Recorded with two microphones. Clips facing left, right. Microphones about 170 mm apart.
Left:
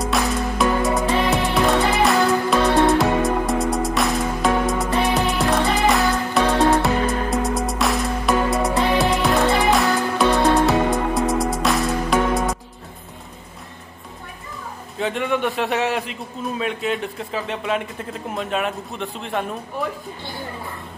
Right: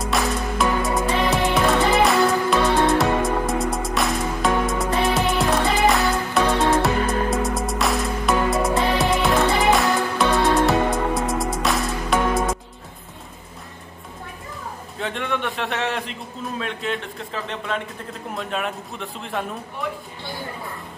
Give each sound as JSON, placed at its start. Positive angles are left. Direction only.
{"t": 0.0, "sound": "music", "side_deg": 0}
{"t": 15.0, "sound": "a man's voice", "side_deg": 5}